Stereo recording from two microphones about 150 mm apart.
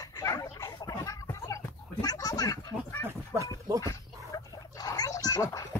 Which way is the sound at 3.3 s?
20° right (ahead or behind).